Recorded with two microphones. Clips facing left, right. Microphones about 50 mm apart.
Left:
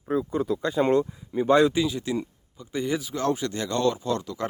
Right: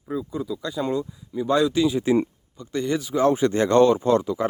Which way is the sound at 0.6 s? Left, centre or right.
Left.